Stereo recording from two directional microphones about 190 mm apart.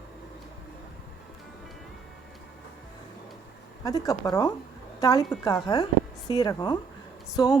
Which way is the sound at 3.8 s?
20° left (ahead or behind).